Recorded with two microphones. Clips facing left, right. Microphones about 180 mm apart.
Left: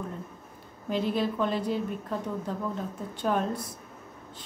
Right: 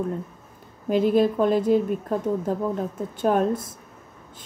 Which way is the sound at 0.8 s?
50° right (ahead or behind).